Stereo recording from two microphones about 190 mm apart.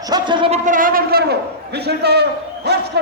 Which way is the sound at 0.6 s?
45° right (ahead or behind).